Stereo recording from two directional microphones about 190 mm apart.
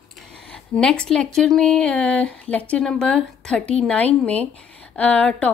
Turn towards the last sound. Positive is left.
turn(degrees=5)  # may be behind; listen again after turning